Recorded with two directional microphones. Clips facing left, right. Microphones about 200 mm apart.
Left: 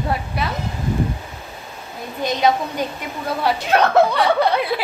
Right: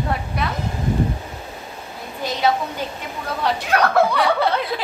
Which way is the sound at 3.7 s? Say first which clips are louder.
Left 2 dB; 25° left (ahead or behind).